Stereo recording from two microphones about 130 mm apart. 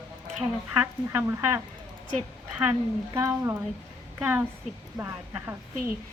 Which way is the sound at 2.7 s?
20° right (ahead or behind).